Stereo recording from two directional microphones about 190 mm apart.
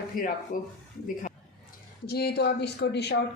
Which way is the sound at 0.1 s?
45° left (ahead or behind).